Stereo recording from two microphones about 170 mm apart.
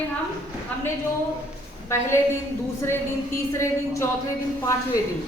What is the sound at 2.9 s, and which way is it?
A woman's voice, 15° left (ahead or behind).